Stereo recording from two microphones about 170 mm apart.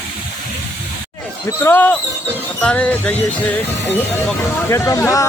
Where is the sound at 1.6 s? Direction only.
15° left (ahead or behind).